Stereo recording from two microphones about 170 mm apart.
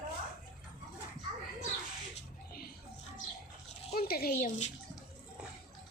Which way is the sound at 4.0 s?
65° left (ahead or behind).